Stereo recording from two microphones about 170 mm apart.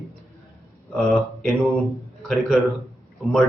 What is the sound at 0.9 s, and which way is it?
A man's voice, centre (ahead or behind).